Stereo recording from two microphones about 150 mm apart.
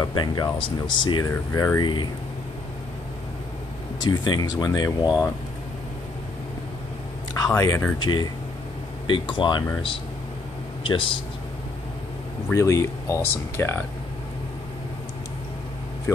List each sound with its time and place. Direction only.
0.0 s speech: 30° left (ahead or behind)
1.3 s speech: 20° left (ahead or behind)
4.0 s speech: 30° left (ahead or behind)
7.3 s speech: 25° left (ahead or behind)
10.8 s a sound: 35° left (ahead or behind)
12.5 s speech: 20° left (ahead or behind)